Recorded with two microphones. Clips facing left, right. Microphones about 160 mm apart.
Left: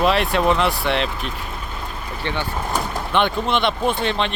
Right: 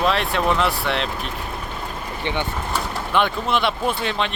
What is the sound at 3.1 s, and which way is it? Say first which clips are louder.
Speech: left 1 dB; 5° right (ahead or behind).